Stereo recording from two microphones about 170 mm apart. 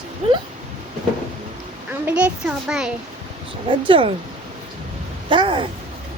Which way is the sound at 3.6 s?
30° right (ahead or behind).